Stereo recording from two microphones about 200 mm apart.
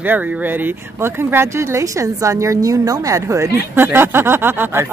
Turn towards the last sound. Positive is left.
turn(degrees=-10)  # may be behind; listen again after turning